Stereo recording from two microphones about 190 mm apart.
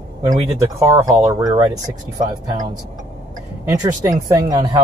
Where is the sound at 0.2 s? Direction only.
15° right (ahead or behind).